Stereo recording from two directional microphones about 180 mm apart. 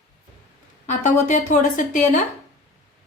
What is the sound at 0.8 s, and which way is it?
Speech, 45° left (ahead or behind).